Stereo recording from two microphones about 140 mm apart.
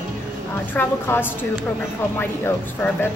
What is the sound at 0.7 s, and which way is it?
Speech, 15° left (ahead or behind).